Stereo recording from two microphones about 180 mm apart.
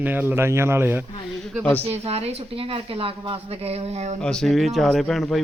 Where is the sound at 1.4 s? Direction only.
5° left (ahead or behind).